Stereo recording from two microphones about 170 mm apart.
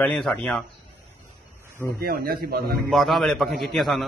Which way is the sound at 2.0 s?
60° right (ahead or behind).